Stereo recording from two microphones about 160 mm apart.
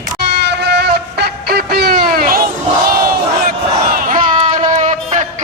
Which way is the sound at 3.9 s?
60° right (ahead or behind).